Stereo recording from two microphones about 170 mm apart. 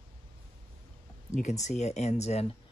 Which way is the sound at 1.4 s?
45° left (ahead or behind).